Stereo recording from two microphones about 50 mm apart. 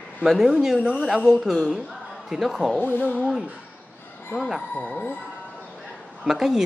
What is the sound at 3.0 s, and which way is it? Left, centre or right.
Speech, right.